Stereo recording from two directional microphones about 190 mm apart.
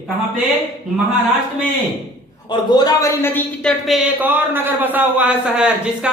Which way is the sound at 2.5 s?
20° left (ahead or behind).